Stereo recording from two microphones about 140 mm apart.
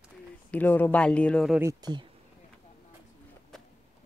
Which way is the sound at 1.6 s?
25° right (ahead or behind).